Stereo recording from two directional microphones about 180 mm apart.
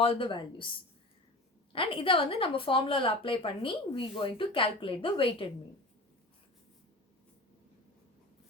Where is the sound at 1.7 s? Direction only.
30° left (ahead or behind).